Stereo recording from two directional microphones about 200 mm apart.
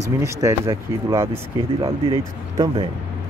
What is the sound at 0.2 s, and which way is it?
Speech, 15° right (ahead or behind).